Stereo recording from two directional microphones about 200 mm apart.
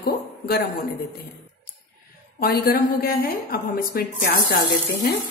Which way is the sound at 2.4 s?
50° left (ahead or behind).